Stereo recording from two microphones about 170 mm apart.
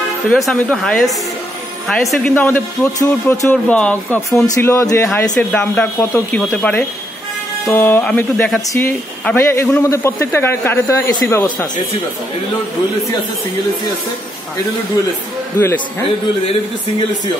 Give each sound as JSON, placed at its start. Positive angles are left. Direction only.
{"t": 0.3, "sound": "speech", "side_deg": 0}